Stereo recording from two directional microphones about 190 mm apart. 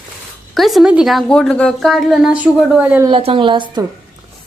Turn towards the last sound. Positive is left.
turn(degrees=-25)  # may be behind; listen again after turning